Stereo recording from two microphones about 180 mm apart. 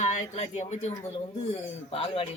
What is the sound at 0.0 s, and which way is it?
Speech, 40° left (ahead or behind).